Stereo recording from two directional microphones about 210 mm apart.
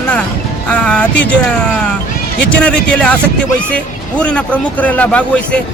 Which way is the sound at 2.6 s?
5° left (ahead or behind).